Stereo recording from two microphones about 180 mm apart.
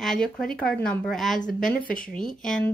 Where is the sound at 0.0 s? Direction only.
5° left (ahead or behind).